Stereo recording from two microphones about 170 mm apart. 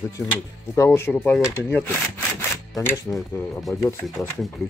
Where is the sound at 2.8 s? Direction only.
15° left (ahead or behind).